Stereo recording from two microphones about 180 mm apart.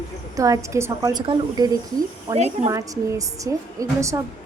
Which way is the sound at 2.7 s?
20° right (ahead or behind).